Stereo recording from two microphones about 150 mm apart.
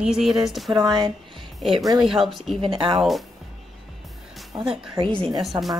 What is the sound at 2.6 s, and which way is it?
Speech, 35° right (ahead or behind).